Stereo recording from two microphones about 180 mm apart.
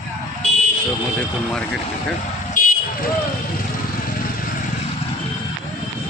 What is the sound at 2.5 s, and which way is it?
Vehicle, 50° left (ahead or behind).